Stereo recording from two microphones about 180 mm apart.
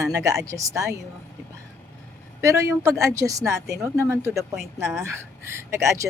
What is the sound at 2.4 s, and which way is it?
A woman's voice, 15° right (ahead or behind).